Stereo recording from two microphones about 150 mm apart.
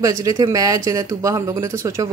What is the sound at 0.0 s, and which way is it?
Speech, 20° right (ahead or behind).